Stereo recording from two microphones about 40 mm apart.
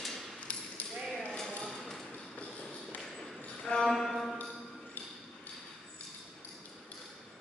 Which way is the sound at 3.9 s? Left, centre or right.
Centre.